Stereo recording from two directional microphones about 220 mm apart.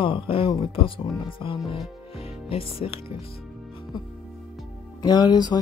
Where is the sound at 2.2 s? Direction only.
25° left (ahead or behind).